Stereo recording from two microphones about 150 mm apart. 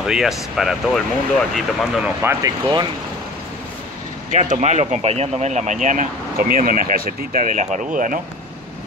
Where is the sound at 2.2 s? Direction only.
25° right (ahead or behind).